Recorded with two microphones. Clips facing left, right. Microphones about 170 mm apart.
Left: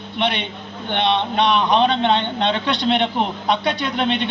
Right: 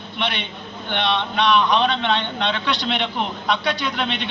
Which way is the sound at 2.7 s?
55° left (ahead or behind).